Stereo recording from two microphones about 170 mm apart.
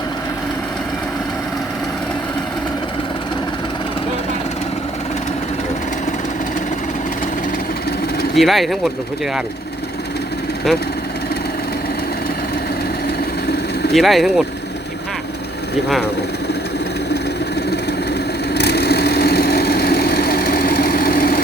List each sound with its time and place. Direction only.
8.4 s speech: centre (ahead or behind)
13.9 s speech: centre (ahead or behind)
18.5 s engine: 75° left (ahead or behind); by 21.4 s 60° left (ahead or behind)